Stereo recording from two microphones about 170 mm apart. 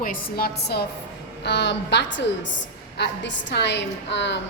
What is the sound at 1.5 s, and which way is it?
A woman's voice, 90° left.